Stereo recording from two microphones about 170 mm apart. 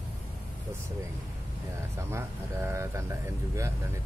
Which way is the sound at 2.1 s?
15° right (ahead or behind).